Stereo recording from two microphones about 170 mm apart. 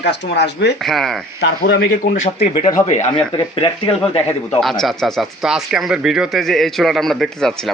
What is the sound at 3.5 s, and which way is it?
Speech, 35° left (ahead or behind).